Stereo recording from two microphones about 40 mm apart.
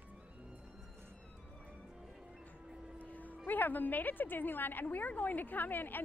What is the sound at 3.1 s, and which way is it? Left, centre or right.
A woman's voice, left.